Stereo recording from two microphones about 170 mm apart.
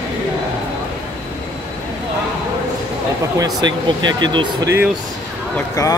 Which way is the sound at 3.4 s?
25° right (ahead or behind).